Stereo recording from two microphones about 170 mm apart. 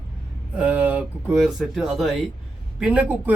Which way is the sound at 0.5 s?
5° right (ahead or behind).